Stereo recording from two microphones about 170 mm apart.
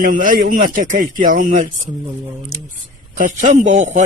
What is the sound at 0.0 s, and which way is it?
A man's voice, 50° right (ahead or behind).